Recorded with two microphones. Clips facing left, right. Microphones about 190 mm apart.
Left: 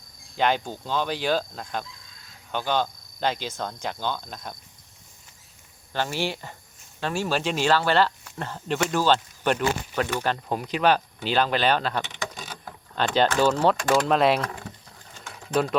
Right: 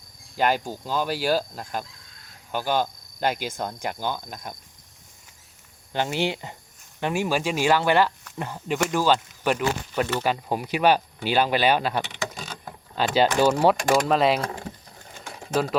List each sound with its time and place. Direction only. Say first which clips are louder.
0.3 s speech: right 1 dB; 5° right (ahead or behind)
2.5 s cricket: right 1 dB; 10° right (ahead or behind)
3.6 s speech: right 1 dB; 10° right (ahead or behind)
5.9 s speech: right 2 dB; 20° right (ahead or behind)
14.1 s speech: even; centre (ahead or behind)